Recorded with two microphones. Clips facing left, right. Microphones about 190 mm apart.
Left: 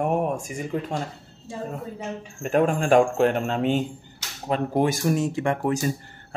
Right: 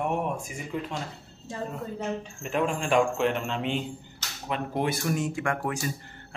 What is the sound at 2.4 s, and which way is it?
A man's voice, 50° left (ahead or behind).